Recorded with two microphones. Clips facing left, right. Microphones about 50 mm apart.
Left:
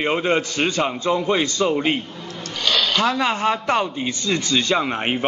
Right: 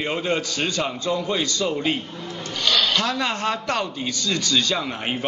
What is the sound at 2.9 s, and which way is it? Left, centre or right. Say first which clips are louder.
A man's voice: left 4 dB; centre.